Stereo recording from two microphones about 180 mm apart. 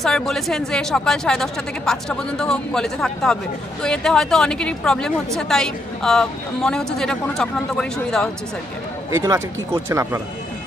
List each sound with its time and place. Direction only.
0.0 s speech: centre (ahead or behind)
9.8 s speech: 15° right (ahead or behind)